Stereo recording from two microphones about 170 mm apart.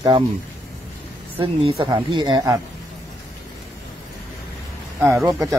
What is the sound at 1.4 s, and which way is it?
Speech, 30° right (ahead or behind).